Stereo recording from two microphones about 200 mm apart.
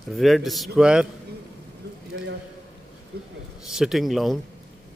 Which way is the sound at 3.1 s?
55° right (ahead or behind).